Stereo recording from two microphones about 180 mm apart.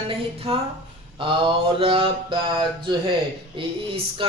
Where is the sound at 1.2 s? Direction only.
30° right (ahead or behind).